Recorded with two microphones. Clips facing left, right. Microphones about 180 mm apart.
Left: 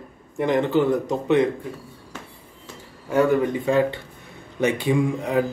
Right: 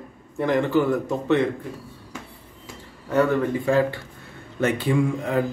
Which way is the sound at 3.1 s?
10° left (ahead or behind).